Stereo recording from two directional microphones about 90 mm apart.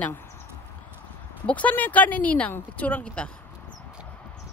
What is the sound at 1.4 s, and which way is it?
Speech, 15° left (ahead or behind).